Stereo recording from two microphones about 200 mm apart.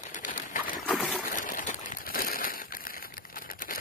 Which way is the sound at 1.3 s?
40° left (ahead or behind).